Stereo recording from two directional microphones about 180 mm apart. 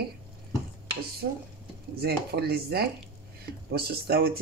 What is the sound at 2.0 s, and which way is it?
Speech, 60° right (ahead or behind).